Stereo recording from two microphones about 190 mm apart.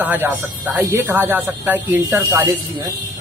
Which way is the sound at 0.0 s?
10° right (ahead or behind).